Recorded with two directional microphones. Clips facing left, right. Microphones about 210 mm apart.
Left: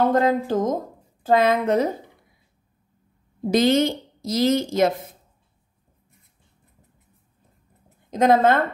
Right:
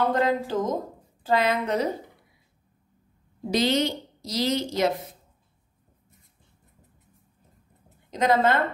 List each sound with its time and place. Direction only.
0.1 s a woman's voice: 45° left (ahead or behind)
3.4 s a woman's voice: 50° left (ahead or behind)
8.1 s a woman's voice: 50° left (ahead or behind)